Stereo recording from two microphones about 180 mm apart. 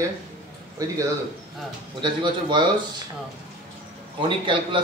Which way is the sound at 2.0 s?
25° right (ahead or behind).